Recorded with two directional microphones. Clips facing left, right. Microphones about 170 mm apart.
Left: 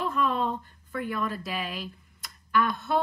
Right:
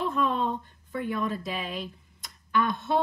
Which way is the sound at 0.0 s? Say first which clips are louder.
Even; 25° right (ahead or behind).